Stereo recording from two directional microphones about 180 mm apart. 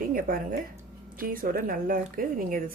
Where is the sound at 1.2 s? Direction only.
50° right (ahead or behind).